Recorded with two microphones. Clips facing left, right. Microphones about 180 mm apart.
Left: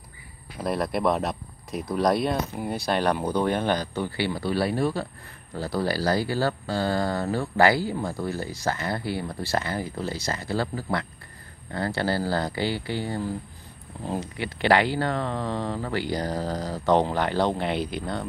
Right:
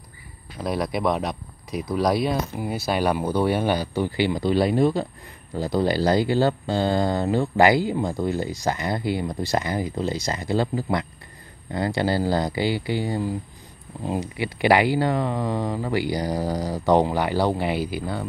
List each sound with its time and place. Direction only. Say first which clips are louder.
0.6 s speech: right 1 dB; centre (ahead or behind)